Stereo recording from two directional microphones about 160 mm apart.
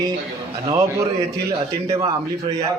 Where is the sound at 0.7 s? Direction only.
20° right (ahead or behind).